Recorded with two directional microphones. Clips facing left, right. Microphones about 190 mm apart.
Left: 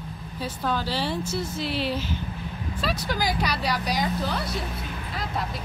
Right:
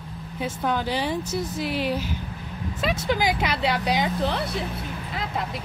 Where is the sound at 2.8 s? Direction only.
25° right (ahead or behind).